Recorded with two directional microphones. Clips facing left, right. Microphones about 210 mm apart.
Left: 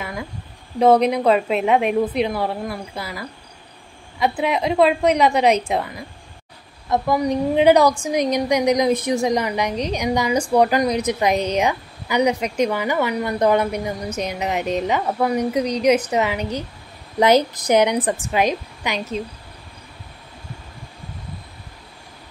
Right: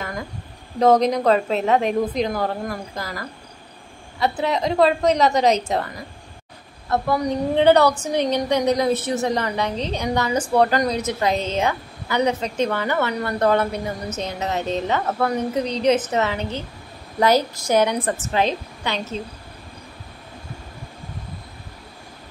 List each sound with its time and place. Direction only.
0.7 s a woman's voice: 10° left (ahead or behind)